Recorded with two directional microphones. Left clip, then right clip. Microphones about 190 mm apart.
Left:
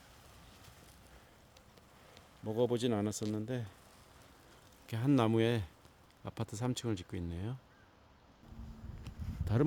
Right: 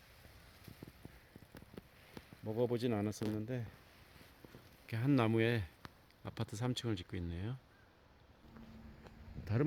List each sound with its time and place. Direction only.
2.4 s speech: 10° left (ahead or behind)
4.9 s speech: 10° left (ahead or behind)
9.5 s speech: 20° left (ahead or behind)